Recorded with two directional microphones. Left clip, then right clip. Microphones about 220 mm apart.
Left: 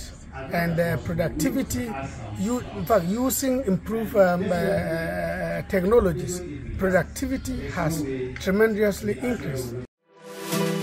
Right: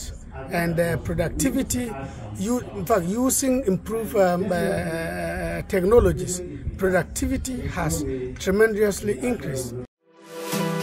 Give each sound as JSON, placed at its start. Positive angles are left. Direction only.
{"t": 0.5, "sound": "speech", "side_deg": -25}